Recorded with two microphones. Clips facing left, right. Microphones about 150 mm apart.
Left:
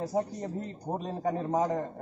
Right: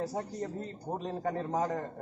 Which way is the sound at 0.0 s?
15° left (ahead or behind).